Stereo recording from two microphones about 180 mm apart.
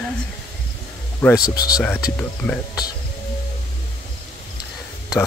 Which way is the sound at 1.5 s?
20° left (ahead or behind).